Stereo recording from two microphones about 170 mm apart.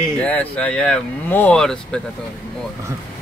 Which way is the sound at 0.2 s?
10° left (ahead or behind).